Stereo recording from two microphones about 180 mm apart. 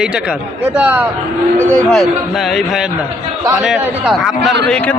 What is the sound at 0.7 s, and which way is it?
A man's voice, 10° right (ahead or behind).